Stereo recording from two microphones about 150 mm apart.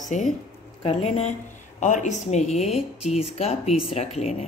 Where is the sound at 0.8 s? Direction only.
40° left (ahead or behind).